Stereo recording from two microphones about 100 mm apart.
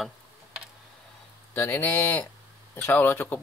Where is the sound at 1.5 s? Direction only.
20° left (ahead or behind).